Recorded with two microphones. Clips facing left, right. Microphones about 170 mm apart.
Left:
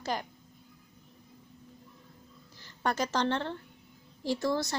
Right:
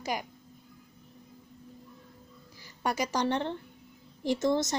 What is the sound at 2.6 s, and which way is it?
A woman's voice, 10° right (ahead or behind).